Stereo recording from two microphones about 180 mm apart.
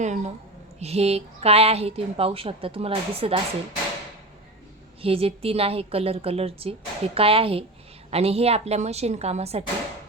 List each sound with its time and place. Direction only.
0.0 s a woman's voice: 40° right (ahead or behind)
5.0 s speech: 30° right (ahead or behind)